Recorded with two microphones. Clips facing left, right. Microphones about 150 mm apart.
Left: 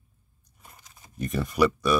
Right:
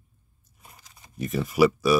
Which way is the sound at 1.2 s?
5° right (ahead or behind).